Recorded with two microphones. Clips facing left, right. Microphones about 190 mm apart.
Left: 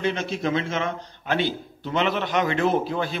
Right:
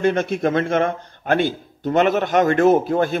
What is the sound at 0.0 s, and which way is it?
A man's voice, 50° right (ahead or behind).